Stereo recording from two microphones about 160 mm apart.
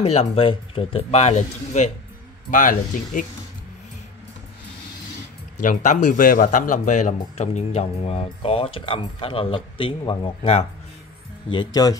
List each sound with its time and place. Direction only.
0.0 s speech: 40° left (ahead or behind); by 3.3 s 55° left (ahead or behind)
5.6 s speech: 50° left (ahead or behind)
11.5 s speech: 25° left (ahead or behind)